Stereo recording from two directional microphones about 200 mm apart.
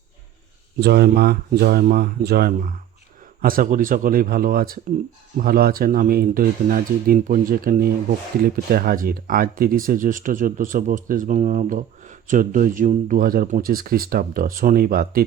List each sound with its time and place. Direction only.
0.8 s speech: 55° right (ahead or behind)